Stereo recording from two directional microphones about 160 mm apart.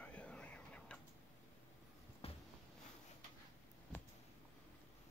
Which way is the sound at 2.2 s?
40° left (ahead or behind).